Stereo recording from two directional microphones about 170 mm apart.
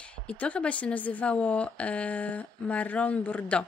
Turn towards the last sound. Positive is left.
turn(degrees=5)  # may be behind; listen again after turning